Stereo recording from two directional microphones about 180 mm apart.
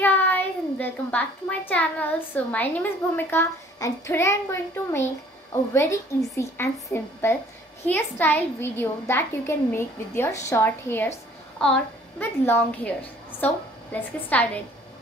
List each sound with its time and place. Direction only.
0.0 s a child's voice: 10° left (ahead or behind)